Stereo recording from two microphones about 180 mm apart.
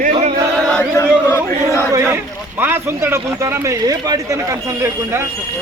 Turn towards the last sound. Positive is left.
turn(degrees=-20)  # may be behind; listen again after turning